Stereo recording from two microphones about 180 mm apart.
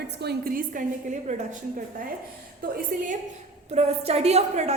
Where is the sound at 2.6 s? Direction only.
55° right (ahead or behind).